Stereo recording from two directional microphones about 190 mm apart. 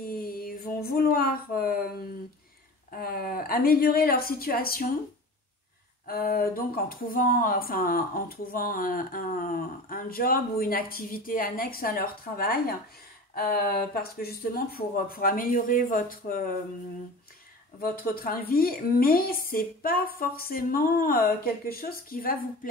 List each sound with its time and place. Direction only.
0.0 s mantra: 50° left (ahead or behind)
0.8 s speech: 50° left (ahead or behind)
6.0 s speech: 50° left (ahead or behind)
17.7 s speech: 50° left (ahead or behind)